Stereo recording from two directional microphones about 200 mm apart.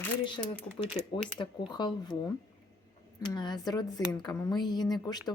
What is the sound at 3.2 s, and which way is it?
Speech, 20° left (ahead or behind).